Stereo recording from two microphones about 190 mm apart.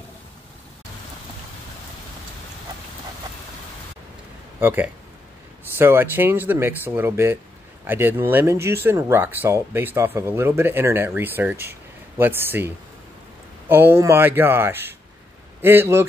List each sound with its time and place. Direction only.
4.6 s speech: 10° right (ahead or behind)